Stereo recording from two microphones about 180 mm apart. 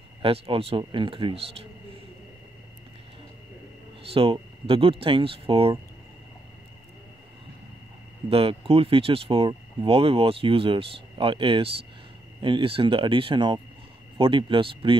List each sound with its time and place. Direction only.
0.2 s speech: 30° right (ahead or behind)
4.1 s speech: 30° right (ahead or behind)
8.3 s speech: 30° right (ahead or behind)